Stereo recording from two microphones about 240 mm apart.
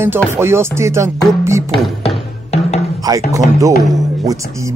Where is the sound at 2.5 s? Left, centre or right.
Left.